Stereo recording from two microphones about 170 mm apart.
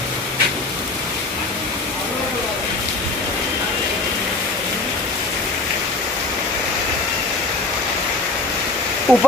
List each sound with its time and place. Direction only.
9.1 s speech: 5° left (ahead or behind)